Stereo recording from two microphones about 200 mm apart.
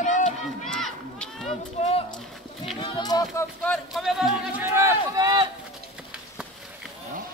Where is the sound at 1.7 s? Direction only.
30° left (ahead or behind).